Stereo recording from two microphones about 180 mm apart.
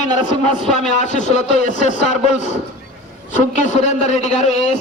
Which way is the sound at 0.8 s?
40° left (ahead or behind).